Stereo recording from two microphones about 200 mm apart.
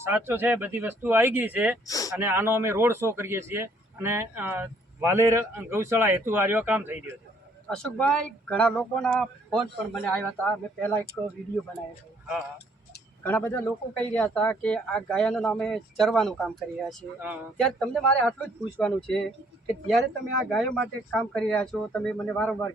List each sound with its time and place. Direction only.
0.0 s speech: 10° right (ahead or behind)
1.9 s speech: 15° left (ahead or behind)
2.1 s speech: 10° right (ahead or behind)
7.7 s a man's voice: 5° left (ahead or behind)
13.2 s a man's voice: 10° left (ahead or behind); by 17.4 s 5° right (ahead or behind)
17.6 s a man's voice: 5° left (ahead or behind)
20.5 s a man's voice: 5° left (ahead or behind)